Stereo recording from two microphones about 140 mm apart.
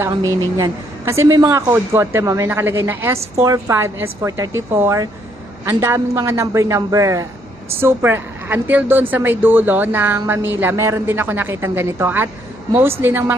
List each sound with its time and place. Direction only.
0.1 s a woman's voice: 25° right (ahead or behind)